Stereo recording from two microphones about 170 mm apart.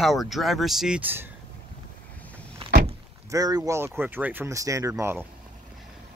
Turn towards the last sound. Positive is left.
turn(degrees=-15)  # may be behind; listen again after turning